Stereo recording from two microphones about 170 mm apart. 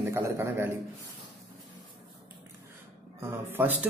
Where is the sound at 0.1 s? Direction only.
15° right (ahead or behind).